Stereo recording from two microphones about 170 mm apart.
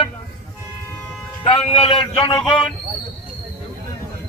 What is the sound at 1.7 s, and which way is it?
Speech, 35° left (ahead or behind).